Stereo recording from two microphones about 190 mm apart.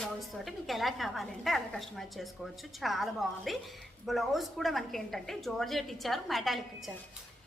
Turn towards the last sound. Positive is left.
turn(degrees=0)  # may be behind; listen again after turning